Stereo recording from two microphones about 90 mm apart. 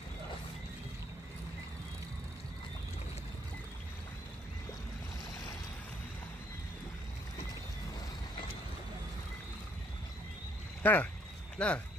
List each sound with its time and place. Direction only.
10.8 s speech: 20° left (ahead or behind)